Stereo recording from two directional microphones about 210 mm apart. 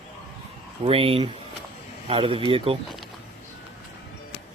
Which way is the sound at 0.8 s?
25° right (ahead or behind).